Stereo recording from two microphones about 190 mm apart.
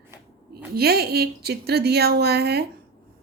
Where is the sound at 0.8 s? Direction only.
55° right (ahead or behind).